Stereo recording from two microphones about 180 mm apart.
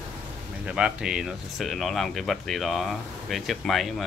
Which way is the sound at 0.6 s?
5° right (ahead or behind).